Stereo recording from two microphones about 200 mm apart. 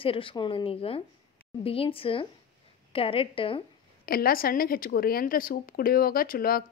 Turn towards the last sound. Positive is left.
turn(degrees=45)  # may be behind; listen again after turning